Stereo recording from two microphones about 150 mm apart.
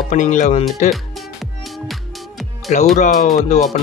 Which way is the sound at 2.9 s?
65° left (ahead or behind).